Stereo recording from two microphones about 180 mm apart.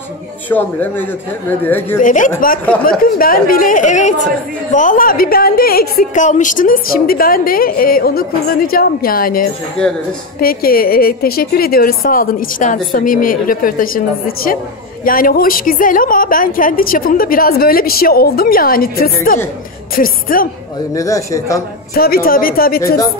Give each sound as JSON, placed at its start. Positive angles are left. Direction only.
{"t": 0.5, "sound": "a man's voice", "side_deg": 10}
{"t": 2.0, "sound": "a woman's voice", "side_deg": 45}
{"t": 2.6, "sound": "a man's voice", "side_deg": 5}
{"t": 3.0, "sound": "a woman's voice", "side_deg": 50}
{"t": 20.9, "sound": "a man's voice", "side_deg": 20}
{"t": 21.9, "sound": "a woman's voice", "side_deg": 55}